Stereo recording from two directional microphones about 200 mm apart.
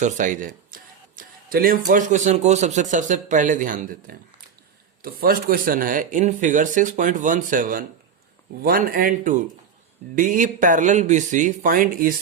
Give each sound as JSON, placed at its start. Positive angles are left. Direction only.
{"t": 0.0, "sound": "speech", "side_deg": -35}